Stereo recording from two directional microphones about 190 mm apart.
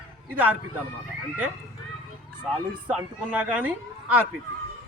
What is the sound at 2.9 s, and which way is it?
A man's voice, 5° right (ahead or behind).